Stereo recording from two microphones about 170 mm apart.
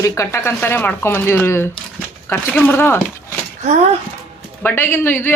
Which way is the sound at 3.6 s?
40° right (ahead or behind).